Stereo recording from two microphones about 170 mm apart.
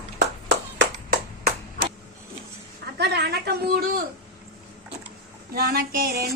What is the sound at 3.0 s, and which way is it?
A woman's voice, 70° right (ahead or behind).